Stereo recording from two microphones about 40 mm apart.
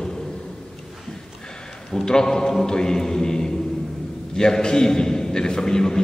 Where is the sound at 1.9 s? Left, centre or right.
Centre.